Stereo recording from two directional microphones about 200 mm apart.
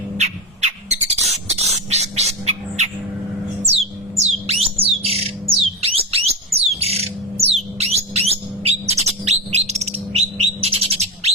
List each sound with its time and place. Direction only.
0.2 s bird: 35° right (ahead or behind)
4.2 s squawk: 30° right (ahead or behind)
10.2 s bird: 30° right (ahead or behind)